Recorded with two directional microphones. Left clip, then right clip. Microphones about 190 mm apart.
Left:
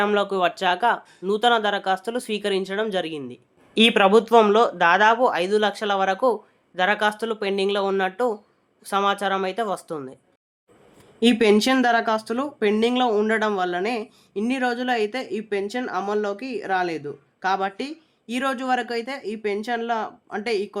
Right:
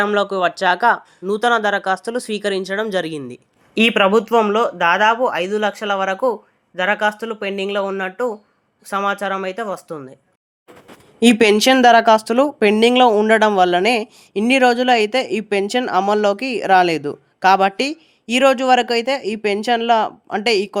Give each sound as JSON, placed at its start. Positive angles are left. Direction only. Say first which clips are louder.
{"t": 0.0, "sound": "speech", "louder": "right 4 dB", "side_deg": -15}
{"t": 11.2, "sound": "speech", "louder": "right 5 dB", "side_deg": -35}